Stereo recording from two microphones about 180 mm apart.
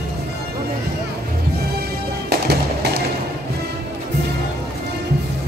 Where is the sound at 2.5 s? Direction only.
65° right (ahead or behind).